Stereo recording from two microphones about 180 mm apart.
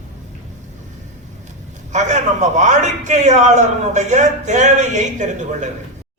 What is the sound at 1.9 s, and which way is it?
A man's voice, 40° right (ahead or behind).